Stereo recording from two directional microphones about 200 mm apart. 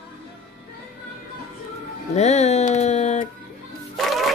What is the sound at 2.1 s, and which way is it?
Music, 35° left (ahead or behind).